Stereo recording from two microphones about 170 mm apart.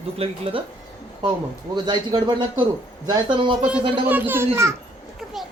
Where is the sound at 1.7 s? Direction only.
25° right (ahead or behind).